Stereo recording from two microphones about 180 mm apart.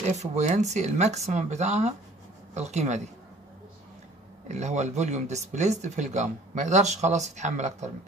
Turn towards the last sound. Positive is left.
turn(degrees=-40)  # may be behind; listen again after turning